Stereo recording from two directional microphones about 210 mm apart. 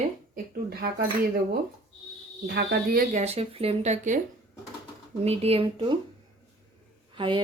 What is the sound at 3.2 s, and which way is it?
Speech, 30° right (ahead or behind).